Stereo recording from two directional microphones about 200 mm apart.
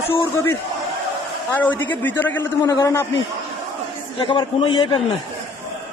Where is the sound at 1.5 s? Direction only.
10° left (ahead or behind); by 5.0 s 25° left (ahead or behind).